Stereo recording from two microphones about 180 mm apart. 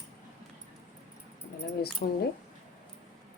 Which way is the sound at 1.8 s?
60° left (ahead or behind).